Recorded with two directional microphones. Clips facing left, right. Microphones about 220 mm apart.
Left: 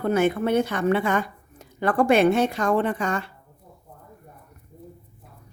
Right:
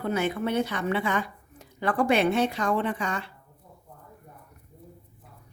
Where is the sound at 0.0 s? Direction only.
50° left (ahead or behind).